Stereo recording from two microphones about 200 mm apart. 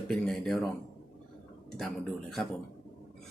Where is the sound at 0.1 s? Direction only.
Centre (ahead or behind).